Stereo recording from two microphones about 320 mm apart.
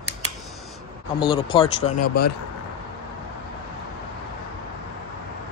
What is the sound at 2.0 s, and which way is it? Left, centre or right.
Speech, left.